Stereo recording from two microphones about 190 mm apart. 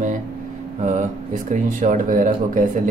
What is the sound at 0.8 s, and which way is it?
Speech, 40° right (ahead or behind).